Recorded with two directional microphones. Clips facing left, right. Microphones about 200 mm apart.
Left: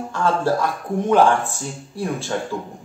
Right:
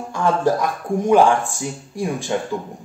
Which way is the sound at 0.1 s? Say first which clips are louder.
Right 2 dB; 15° right (ahead or behind).